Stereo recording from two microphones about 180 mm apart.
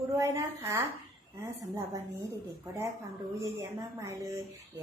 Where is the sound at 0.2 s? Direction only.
15° right (ahead or behind).